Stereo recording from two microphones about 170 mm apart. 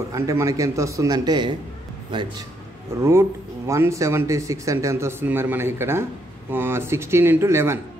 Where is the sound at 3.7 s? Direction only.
15° right (ahead or behind).